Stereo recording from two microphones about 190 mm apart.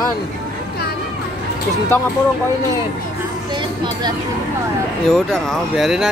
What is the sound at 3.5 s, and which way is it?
Speech, 25° right (ahead or behind).